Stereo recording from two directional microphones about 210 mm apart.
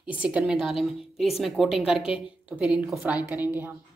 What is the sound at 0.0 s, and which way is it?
A woman's voice, 5° right (ahead or behind).